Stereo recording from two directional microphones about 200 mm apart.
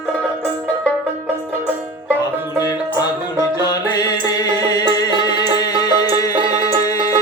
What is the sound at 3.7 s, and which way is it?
Music, 20° left (ahead or behind).